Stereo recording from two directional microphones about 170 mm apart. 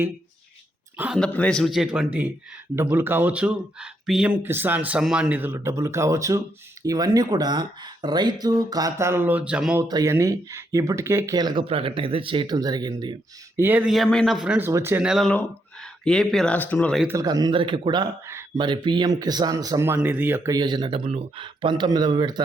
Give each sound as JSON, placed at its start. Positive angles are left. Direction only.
{"t": 0.9, "sound": "speech", "side_deg": -10}
{"t": 1.2, "sound": "speech", "side_deg": 5}
{"t": 2.9, "sound": "speech", "side_deg": -10}
{"t": 9.9, "sound": "speech", "side_deg": -20}
{"t": 13.6, "sound": "speech", "side_deg": -10}
{"t": 15.3, "sound": "speech", "side_deg": 5}
{"t": 17.2, "sound": "speech", "side_deg": -25}
{"t": 18.3, "sound": "a sound", "side_deg": -15}
{"t": 18.6, "sound": "speech", "side_deg": -25}